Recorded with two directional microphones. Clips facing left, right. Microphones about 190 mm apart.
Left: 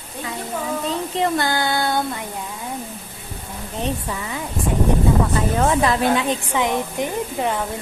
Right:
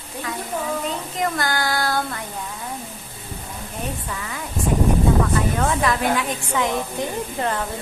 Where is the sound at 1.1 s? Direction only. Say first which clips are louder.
Left 3 dB; 25° left (ahead or behind).